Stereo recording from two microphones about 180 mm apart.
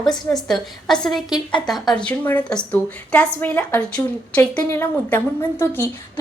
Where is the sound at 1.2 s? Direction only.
20° left (ahead or behind).